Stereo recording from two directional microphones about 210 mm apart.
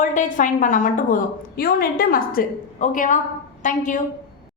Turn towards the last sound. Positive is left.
turn(degrees=35)  # may be behind; listen again after turning